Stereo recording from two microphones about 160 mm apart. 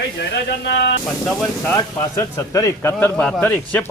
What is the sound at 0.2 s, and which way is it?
Speech, 90° left.